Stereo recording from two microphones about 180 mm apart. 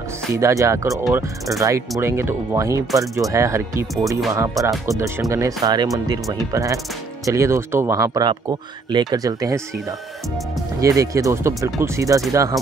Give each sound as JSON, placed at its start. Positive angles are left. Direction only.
{"t": 0.3, "sound": "speech", "side_deg": -15}